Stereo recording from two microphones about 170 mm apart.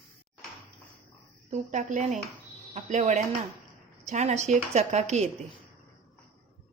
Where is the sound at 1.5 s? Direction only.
40° right (ahead or behind).